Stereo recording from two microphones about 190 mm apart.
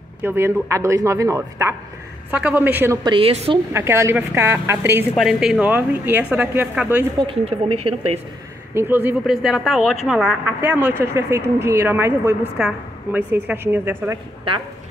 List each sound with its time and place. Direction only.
0.2 s a woman's voice: 10° right (ahead or behind)
3.0 s a woman's voice: 25° right (ahead or behind)
3.7 s a woman's voice: 15° right (ahead or behind)
5.1 s a woman's voice: centre (ahead or behind)
7.2 s speech: 30° right (ahead or behind)
8.7 s a woman's voice: 10° right (ahead or behind)